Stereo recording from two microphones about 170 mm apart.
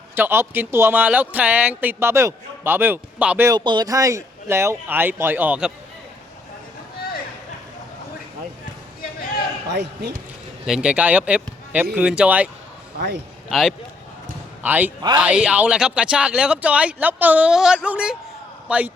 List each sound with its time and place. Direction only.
0.2 s speech: 15° right (ahead or behind)
3.5 s speech: 25° right (ahead or behind); by 5.7 s 5° right (ahead or behind)
9.7 s speech: 75° right (ahead or behind)
10.7 s speech: 5° right (ahead or behind)
13.5 s speech: centre (ahead or behind)